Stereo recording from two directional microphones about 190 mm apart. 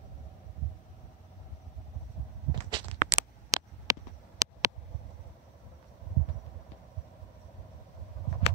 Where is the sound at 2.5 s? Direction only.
25° right (ahead or behind).